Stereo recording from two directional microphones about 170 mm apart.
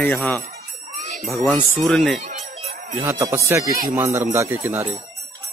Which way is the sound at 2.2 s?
40° right (ahead or behind).